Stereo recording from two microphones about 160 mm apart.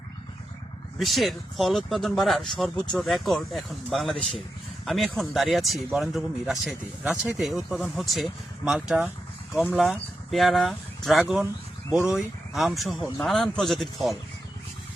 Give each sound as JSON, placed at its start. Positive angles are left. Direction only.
{"t": 0.9, "sound": "speech", "side_deg": 0}